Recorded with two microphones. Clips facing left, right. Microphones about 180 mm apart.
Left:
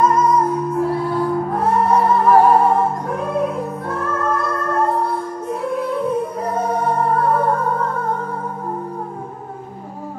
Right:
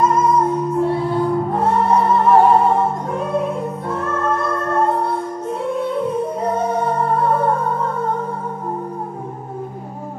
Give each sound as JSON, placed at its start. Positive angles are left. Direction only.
{"t": 0.0, "sound": "music", "side_deg": -25}
{"t": 3.9, "sound": "music", "side_deg": -25}
{"t": 6.4, "sound": "music", "side_deg": -25}